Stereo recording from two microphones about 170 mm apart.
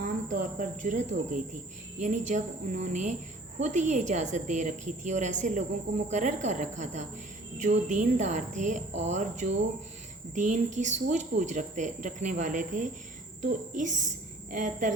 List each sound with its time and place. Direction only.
0.0 s a woman's voice: 55° right (ahead or behind)